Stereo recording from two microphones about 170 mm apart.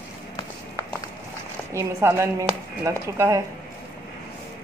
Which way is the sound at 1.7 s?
15° right (ahead or behind).